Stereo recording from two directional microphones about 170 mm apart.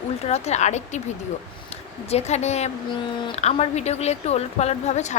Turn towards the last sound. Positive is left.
turn(degrees=40)  # may be behind; listen again after turning